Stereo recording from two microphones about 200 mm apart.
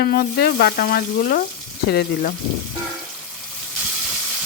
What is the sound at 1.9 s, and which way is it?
Speech, 55° left (ahead or behind).